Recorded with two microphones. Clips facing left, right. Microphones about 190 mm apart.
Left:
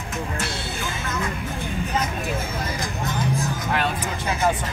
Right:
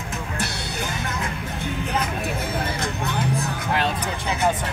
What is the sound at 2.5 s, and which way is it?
Music, 65° right (ahead or behind).